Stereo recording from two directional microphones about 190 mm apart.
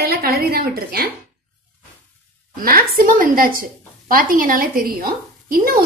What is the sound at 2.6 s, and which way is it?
A woman's voice, 50° right (ahead or behind).